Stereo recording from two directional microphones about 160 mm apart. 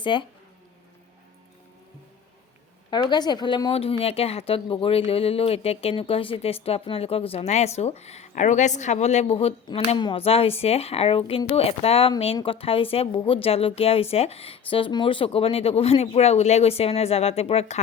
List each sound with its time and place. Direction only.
0.0 s speech: 30° left (ahead or behind)
2.9 s speech: 25° left (ahead or behind)